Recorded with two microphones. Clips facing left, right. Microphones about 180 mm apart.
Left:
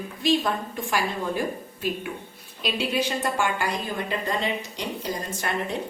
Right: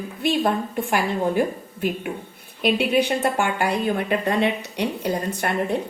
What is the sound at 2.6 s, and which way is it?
A woman's voice, 60° right (ahead or behind).